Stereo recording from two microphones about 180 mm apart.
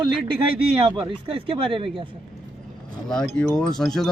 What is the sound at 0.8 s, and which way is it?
Speech, 30° right (ahead or behind).